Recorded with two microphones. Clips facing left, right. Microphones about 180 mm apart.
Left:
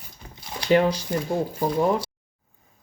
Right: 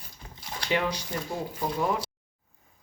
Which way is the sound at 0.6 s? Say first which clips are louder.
Left 9 dB; 35° left (ahead or behind).